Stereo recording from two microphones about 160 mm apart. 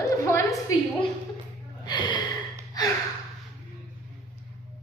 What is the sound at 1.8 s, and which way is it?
Gasp, 25° left (ahead or behind).